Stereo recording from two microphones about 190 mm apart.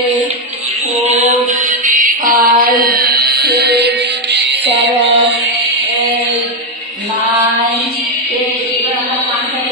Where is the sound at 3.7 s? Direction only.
60° right (ahead or behind).